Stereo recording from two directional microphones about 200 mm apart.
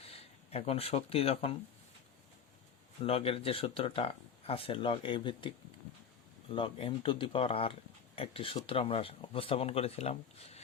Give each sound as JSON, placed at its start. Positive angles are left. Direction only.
{"t": 0.0, "sound": "speech", "side_deg": 30}
{"t": 3.0, "sound": "speech", "side_deg": 30}
{"t": 6.5, "sound": "speech", "side_deg": 25}